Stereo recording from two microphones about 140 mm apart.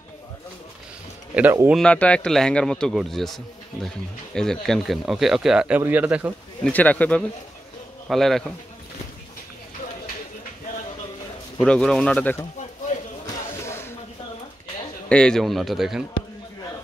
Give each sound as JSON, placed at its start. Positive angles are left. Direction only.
{"t": 1.3, "sound": "speech", "side_deg": -15}
{"t": 1.8, "sound": "speech", "side_deg": 10}
{"t": 6.6, "sound": "a man's voice", "side_deg": 10}
{"t": 11.6, "sound": "a man's voice", "side_deg": 5}
{"t": 13.7, "sound": "a sound", "side_deg": 15}
{"t": 15.0, "sound": "speech", "side_deg": 5}